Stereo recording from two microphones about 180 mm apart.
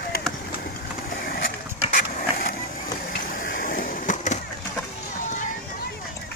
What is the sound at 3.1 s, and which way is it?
Skateboard, 50° left (ahead or behind).